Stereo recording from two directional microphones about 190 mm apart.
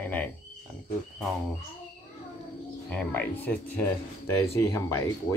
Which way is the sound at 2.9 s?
10° left (ahead or behind).